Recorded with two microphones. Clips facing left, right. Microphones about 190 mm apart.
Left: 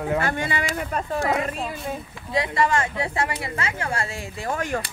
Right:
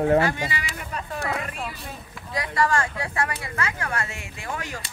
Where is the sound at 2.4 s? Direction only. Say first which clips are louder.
Left 2 dB; 20° left (ahead or behind).